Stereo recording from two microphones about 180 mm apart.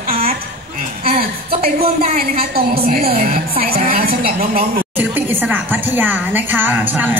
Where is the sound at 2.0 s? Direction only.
55° right (ahead or behind).